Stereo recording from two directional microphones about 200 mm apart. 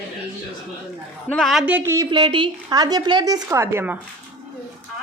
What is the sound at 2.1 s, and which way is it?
A woman's voice, 25° right (ahead or behind).